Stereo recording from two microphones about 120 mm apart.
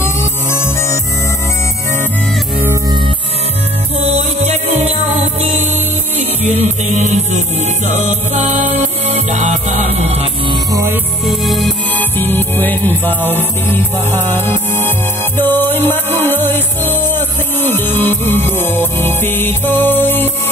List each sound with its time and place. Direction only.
0.0 s music: 20° left (ahead or behind)
4.0 s music: 60° right (ahead or behind)
10.5 s music: 25° right (ahead or behind)
11.2 s music: centre (ahead or behind)
12.0 s music: 15° left (ahead or behind)